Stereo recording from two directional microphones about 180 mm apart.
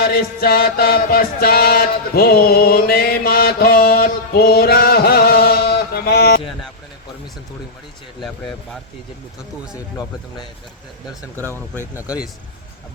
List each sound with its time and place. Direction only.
0.0 s music: 60° left (ahead or behind)
9.7 s speech: 20° left (ahead or behind)
11.4 s speech: 10° left (ahead or behind)
11.9 s speech: 5° right (ahead or behind)